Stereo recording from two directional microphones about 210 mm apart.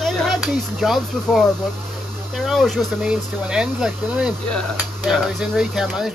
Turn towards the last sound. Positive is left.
turn(degrees=0)  # may be behind; listen again after turning